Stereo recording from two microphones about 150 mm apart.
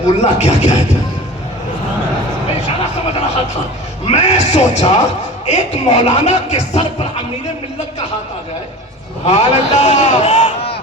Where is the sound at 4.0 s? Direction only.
45° left (ahead or behind).